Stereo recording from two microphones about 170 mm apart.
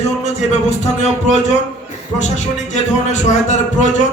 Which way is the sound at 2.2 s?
45° left (ahead or behind).